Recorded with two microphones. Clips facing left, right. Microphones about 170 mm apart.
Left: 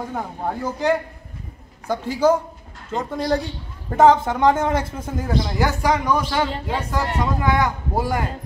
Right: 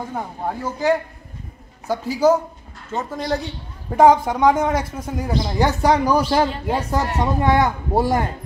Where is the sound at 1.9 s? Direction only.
10° right (ahead or behind).